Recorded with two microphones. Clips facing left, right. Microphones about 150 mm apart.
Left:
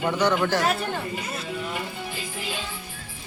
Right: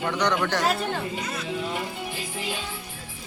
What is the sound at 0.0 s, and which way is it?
Speech, 10° left (ahead or behind).